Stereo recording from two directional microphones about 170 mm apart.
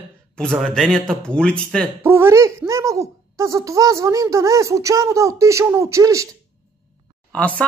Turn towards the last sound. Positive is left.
turn(degrees=10)  # may be behind; listen again after turning